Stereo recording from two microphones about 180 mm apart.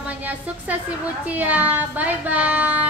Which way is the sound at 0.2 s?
10° right (ahead or behind).